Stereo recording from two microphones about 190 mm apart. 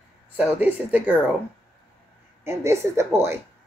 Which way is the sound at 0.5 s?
10° right (ahead or behind).